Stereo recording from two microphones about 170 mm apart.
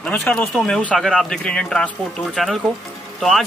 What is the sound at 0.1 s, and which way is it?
Speech, 10° left (ahead or behind).